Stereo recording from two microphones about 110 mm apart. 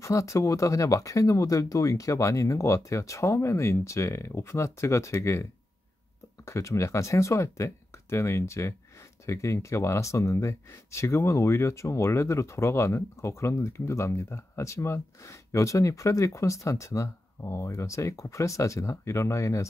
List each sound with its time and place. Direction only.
0.0 s speech: 30° left (ahead or behind)